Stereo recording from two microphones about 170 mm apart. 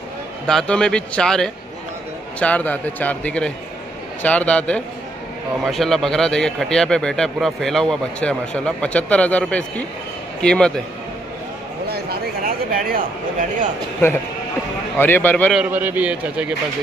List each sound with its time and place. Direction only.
0.5 s a man's voice: 5° left (ahead or behind)
11.9 s a sound: 60° right (ahead or behind)
15.0 s a man's voice: 10° left (ahead or behind)
15.5 s a man's voice: 10° right (ahead or behind)